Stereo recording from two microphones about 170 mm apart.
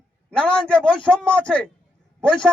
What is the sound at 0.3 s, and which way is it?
A man's voice, 5° left (ahead or behind).